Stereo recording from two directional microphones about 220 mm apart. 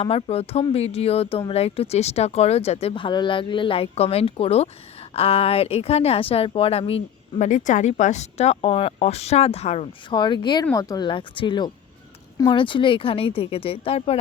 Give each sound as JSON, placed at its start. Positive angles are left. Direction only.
{"t": 0.0, "sound": "a woman's voice", "side_deg": 25}